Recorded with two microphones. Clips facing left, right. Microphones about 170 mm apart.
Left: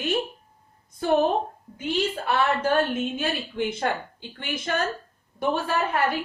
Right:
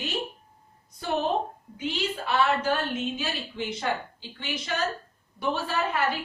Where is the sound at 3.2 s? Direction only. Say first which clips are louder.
Left 5 dB; 55° left (ahead or behind).